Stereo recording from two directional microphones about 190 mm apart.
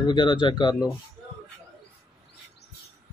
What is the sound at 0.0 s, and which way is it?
Speech, 25° left (ahead or behind).